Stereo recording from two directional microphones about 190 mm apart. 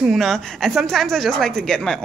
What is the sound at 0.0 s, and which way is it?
A woman's voice, centre (ahead or behind).